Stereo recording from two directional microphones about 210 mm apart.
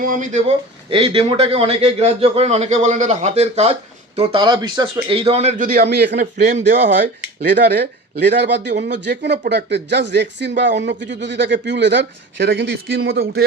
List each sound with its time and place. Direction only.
0.0 s a man's voice: 40° right (ahead or behind)
5.7 s a man's voice: 50° right (ahead or behind)
6.4 s speech: 35° right (ahead or behind)
6.7 s speech: 55° right (ahead or behind)